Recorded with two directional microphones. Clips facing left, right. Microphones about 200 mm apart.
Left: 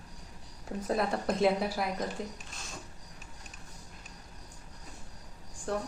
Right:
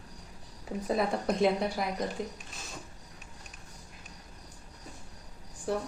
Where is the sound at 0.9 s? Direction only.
Centre (ahead or behind).